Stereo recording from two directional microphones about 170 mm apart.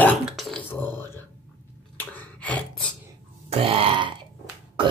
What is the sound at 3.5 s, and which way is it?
Burping, 35° right (ahead or behind).